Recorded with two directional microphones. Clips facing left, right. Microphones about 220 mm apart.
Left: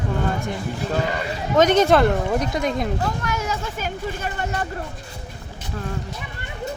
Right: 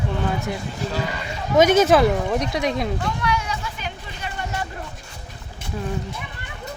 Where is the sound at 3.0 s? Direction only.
45° left (ahead or behind).